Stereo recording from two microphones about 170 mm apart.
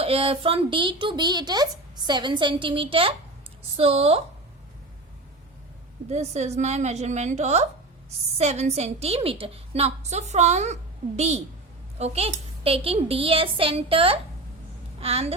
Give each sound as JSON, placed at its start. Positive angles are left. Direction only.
{"t": 0.0, "sound": "a woman's voice", "side_deg": -35}
{"t": 6.1, "sound": "a woman's voice", "side_deg": -40}